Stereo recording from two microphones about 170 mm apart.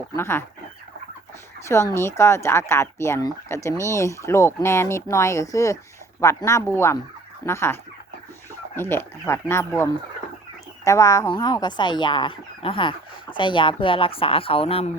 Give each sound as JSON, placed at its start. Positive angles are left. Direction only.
{"t": 0.2, "sound": "speech", "side_deg": 15}
{"t": 1.6, "sound": "speech", "side_deg": 15}